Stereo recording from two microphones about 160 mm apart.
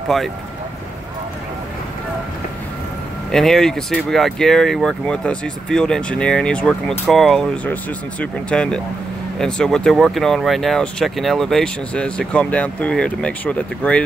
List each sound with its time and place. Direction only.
3.3 s speech: centre (ahead or behind)